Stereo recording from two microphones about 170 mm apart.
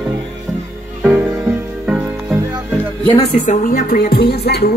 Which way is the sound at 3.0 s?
40° left (ahead or behind).